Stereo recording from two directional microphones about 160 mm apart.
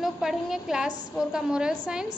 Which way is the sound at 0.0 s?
Centre (ahead or behind).